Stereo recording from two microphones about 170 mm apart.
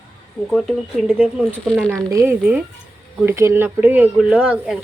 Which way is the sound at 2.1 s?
20° right (ahead or behind).